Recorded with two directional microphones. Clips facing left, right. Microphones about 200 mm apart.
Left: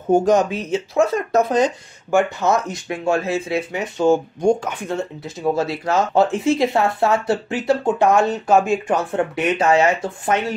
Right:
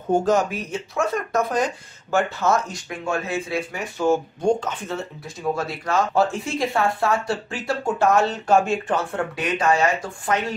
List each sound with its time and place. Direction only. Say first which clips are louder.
0.1 s speech: left 4 dB; 15° left (ahead or behind)
5.4 s speech: left 5 dB; 25° left (ahead or behind)